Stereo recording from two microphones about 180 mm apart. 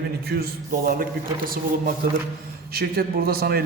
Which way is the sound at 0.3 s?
60° right (ahead or behind).